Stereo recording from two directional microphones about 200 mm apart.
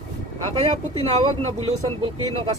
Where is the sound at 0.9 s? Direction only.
30° right (ahead or behind).